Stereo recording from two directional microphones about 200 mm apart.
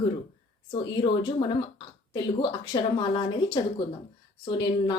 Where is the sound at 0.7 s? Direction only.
25° left (ahead or behind).